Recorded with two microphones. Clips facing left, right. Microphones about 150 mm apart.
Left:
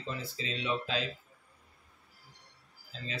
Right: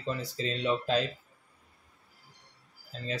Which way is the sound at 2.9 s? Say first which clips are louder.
Right 3 dB; 45° right (ahead or behind).